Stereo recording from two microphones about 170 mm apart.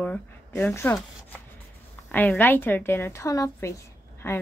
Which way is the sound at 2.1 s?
10° left (ahead or behind).